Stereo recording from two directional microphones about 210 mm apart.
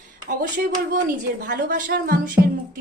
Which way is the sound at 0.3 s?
40° right (ahead or behind).